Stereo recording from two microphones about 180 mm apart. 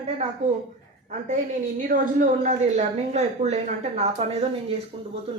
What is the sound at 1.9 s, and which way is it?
Speech, 45° right (ahead or behind).